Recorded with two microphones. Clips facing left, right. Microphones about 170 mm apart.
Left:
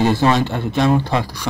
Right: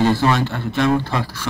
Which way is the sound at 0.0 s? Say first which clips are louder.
Left 1 dB; 20° left (ahead or behind).